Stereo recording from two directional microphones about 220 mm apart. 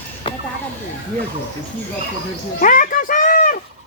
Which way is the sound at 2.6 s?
35° left (ahead or behind).